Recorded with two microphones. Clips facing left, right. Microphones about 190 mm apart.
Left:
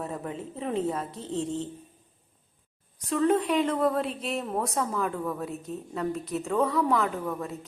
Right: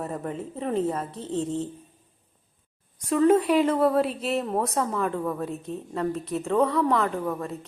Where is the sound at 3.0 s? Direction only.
10° right (ahead or behind).